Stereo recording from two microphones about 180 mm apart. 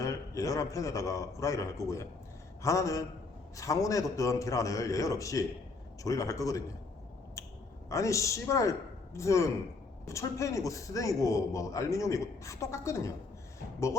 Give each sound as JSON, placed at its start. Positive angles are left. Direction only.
{"t": 0.0, "sound": "a man's voice", "side_deg": 15}
{"t": 7.4, "sound": "a sound", "side_deg": 15}
{"t": 7.9, "sound": "a man's voice", "side_deg": 15}